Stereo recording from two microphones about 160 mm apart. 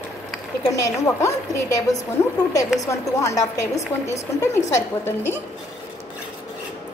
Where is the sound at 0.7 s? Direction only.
20° left (ahead or behind).